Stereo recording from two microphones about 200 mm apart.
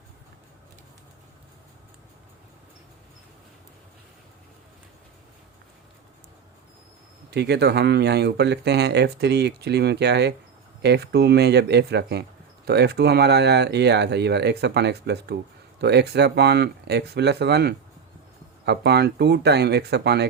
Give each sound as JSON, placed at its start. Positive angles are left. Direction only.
{"t": 7.3, "sound": "speech", "side_deg": -55}